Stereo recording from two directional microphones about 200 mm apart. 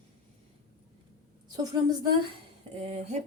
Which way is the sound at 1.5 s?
20° right (ahead or behind).